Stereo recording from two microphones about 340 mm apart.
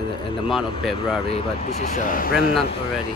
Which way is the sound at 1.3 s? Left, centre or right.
Centre.